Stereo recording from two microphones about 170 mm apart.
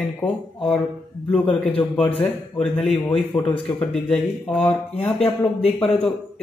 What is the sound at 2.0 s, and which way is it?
Speech, 30° left (ahead or behind).